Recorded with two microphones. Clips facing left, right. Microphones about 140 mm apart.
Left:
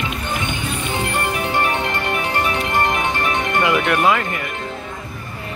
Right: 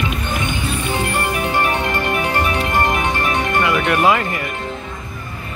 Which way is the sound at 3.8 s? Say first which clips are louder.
Right 2 dB; 5° right (ahead or behind).